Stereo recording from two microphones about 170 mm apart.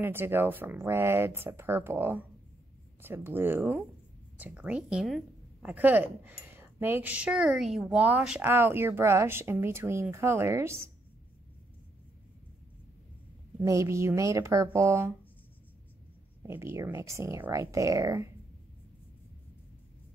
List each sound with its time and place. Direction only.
0.0 s a woman's voice: 15° right (ahead or behind)
13.6 s a woman's voice: 15° right (ahead or behind)
16.4 s a woman's voice: 15° right (ahead or behind)